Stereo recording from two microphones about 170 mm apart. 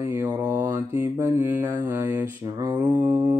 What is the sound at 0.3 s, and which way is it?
Mantra, 15° right (ahead or behind).